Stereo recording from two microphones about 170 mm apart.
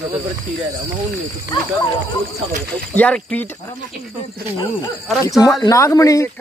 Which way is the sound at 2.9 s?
5° left (ahead or behind).